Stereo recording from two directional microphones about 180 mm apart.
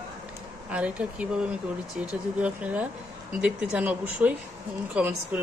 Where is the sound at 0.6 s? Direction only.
5° right (ahead or behind).